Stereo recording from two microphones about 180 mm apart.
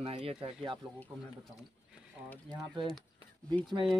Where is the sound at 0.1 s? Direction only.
30° right (ahead or behind).